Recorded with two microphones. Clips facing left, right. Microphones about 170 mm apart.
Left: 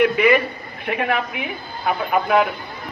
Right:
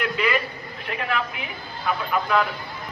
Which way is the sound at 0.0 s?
60° left (ahead or behind).